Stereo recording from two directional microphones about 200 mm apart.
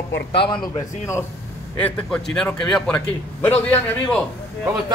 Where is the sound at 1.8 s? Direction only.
5° left (ahead or behind).